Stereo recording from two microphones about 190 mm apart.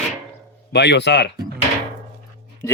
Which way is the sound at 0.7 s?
65° left (ahead or behind).